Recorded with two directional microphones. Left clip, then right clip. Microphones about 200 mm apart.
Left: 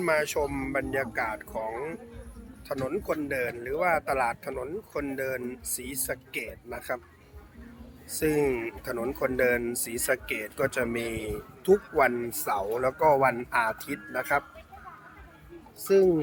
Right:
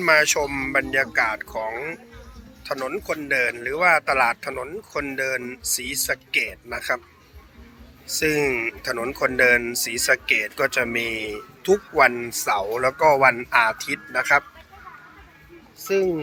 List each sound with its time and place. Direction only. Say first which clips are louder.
0.0 s speech: right 8 dB; centre (ahead or behind)
8.2 s speech: right 5 dB; 10° left (ahead or behind)
15.8 s speech: even; 25° left (ahead or behind)